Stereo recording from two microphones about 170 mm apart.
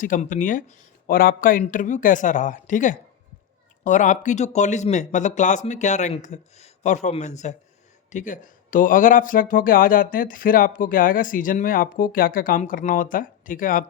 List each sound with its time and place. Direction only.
0.0 s speech: 50° left (ahead or behind)